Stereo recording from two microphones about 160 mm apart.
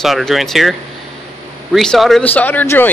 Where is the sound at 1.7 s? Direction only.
Centre (ahead or behind).